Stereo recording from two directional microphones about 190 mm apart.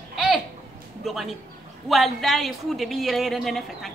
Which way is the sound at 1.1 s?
Centre (ahead or behind).